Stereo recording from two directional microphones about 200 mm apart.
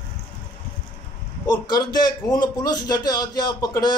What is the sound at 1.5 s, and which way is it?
A man's voice, 20° left (ahead or behind).